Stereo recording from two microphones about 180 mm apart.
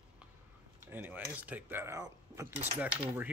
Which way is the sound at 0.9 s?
10° right (ahead or behind).